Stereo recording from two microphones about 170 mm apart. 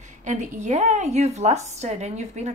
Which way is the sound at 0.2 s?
45° right (ahead or behind).